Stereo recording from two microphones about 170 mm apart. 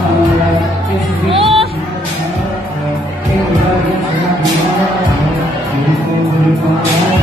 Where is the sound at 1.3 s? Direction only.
35° right (ahead or behind).